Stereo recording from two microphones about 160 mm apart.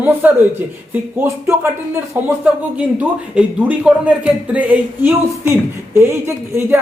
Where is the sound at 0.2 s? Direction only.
10° right (ahead or behind).